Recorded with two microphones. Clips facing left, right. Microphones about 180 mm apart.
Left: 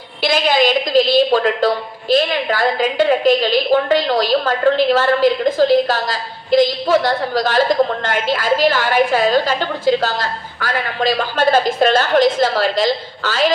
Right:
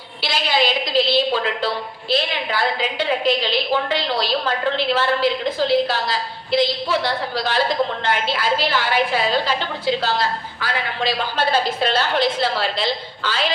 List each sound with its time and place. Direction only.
0.2 s a woman's voice: 50° left (ahead or behind)